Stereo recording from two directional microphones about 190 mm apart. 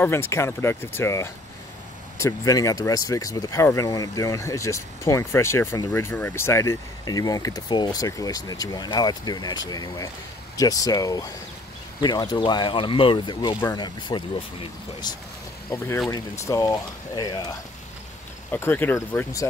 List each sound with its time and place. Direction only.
0.0 s speech: 15° left (ahead or behind)
18.5 s speech: 10° left (ahead or behind)